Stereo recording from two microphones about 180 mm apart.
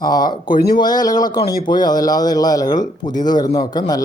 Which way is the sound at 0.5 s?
55° left (ahead or behind).